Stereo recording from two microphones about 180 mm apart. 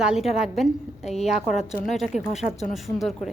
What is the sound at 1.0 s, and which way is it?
Speech, 35° left (ahead or behind).